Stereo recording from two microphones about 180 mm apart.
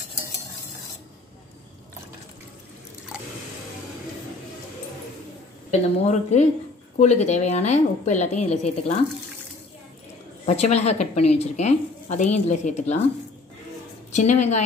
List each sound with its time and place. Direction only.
5.7 s speech: 40° left (ahead or behind)
10.4 s speech: 35° left (ahead or behind)
14.1 s speech: 40° left (ahead or behind)